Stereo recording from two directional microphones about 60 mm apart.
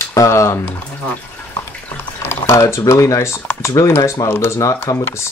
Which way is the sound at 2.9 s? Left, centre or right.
Left.